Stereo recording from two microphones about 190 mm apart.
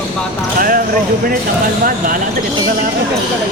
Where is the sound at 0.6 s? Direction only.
50° right (ahead or behind).